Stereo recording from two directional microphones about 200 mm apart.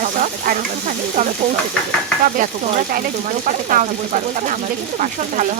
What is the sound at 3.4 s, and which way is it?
A woman's voice, 40° right (ahead or behind).